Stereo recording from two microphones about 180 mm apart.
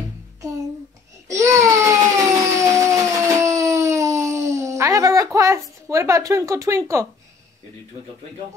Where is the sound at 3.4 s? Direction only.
15° right (ahead or behind).